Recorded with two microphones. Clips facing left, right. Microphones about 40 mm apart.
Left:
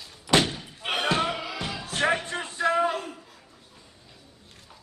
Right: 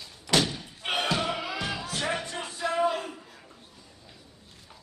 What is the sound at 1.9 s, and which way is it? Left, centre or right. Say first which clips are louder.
Music: left 9 dB; left.